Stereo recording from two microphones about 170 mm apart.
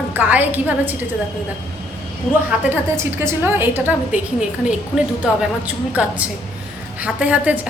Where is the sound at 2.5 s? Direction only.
10° right (ahead or behind).